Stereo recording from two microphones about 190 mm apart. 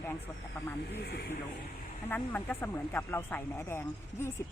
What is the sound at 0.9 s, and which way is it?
Speech, 60° left (ahead or behind).